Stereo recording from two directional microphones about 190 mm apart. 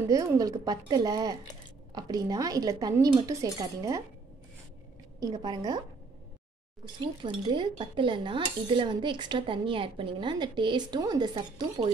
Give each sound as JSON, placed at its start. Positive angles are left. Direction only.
{"t": 0.1, "sound": "dishes", "side_deg": -20}
{"t": 5.2, "sound": "dishes", "side_deg": -20}
{"t": 6.8, "sound": "dishes", "side_deg": -25}